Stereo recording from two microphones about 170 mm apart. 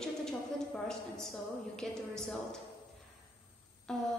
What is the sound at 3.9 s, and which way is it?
Speech, 5° left (ahead or behind).